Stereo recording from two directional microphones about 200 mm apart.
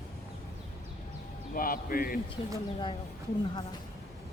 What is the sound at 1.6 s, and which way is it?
Speech, 45° left (ahead or behind).